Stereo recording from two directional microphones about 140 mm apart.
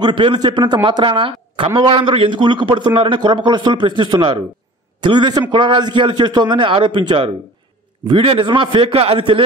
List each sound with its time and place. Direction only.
0.0 s a man's voice: 35° right (ahead or behind)